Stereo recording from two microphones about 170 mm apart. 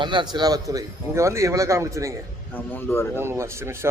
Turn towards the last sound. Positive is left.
turn(degrees=-15)  # may be behind; listen again after turning